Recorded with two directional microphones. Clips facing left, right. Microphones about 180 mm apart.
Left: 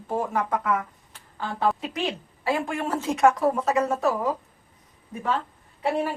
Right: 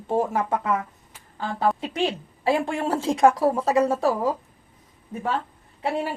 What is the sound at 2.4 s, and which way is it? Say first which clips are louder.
Speech: right 3 dB; 30° right (ahead or behind).